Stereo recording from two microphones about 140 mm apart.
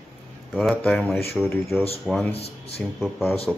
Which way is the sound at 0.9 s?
Centre (ahead or behind).